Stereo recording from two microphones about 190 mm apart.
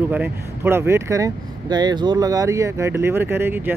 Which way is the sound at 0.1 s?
10° right (ahead or behind).